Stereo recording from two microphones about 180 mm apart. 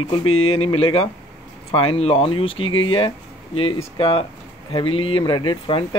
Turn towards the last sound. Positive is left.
turn(degrees=25)  # may be behind; listen again after turning